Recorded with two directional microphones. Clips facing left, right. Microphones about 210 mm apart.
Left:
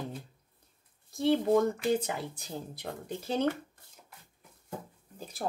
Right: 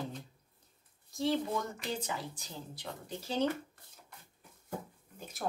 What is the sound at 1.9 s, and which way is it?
Speech, 55° left (ahead or behind).